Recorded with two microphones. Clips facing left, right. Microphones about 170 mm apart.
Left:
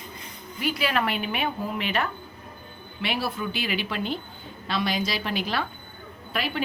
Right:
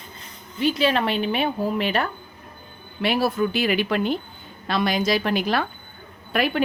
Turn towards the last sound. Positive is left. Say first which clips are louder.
# right 7 dB
turn(degrees=-55)  # may be behind; listen again after turning